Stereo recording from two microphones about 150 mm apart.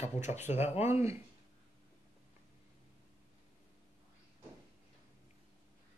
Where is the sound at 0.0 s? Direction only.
50° left (ahead or behind).